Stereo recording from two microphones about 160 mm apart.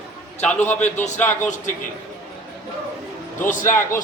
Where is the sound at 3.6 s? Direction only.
15° left (ahead or behind).